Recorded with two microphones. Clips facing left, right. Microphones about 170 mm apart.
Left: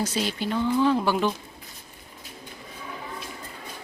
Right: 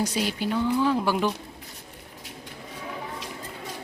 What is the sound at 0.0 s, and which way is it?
Speech, 10° right (ahead or behind).